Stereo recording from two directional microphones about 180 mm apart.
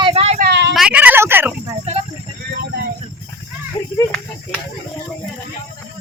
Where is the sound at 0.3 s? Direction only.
65° right (ahead or behind).